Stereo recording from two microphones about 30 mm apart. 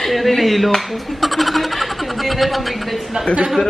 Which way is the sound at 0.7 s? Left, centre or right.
Centre.